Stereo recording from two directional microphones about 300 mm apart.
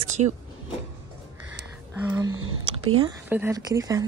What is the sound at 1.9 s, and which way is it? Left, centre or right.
Speech, centre.